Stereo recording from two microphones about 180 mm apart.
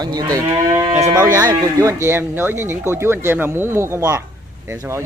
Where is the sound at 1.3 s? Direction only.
15° right (ahead or behind).